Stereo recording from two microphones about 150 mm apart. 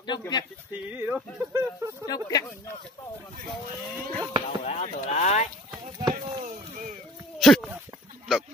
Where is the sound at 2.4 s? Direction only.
15° left (ahead or behind).